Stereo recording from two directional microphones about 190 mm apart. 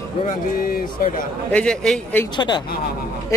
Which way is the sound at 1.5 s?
5° left (ahead or behind).